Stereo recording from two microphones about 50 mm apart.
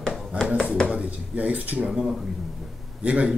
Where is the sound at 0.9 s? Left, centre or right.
Right.